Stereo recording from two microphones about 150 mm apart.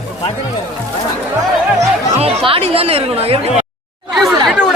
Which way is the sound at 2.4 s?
40° right (ahead or behind).